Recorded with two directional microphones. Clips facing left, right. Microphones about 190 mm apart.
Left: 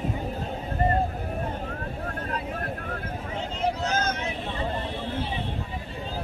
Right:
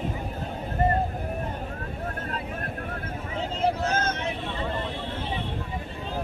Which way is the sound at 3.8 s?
55° right (ahead or behind).